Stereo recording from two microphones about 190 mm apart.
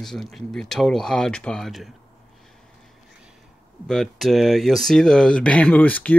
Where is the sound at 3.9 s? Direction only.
Centre (ahead or behind).